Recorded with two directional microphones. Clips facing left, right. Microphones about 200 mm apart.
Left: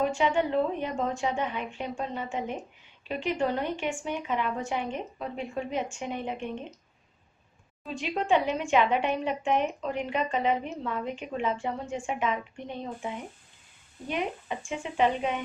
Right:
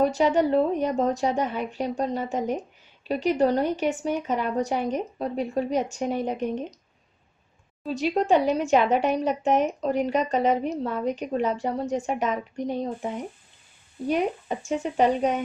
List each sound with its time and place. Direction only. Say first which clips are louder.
0.0 s a woman's voice: right 5 dB; 40° right (ahead or behind)
7.8 s a woman's voice: right 7 dB; 40° right (ahead or behind)